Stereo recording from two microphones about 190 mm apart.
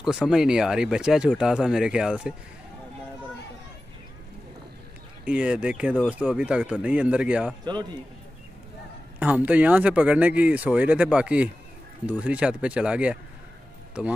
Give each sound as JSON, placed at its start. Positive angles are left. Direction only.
{"t": 0.0, "sound": "speech", "side_deg": -5}
{"t": 5.2, "sound": "speech", "side_deg": -5}
{"t": 9.2, "sound": "speech", "side_deg": -10}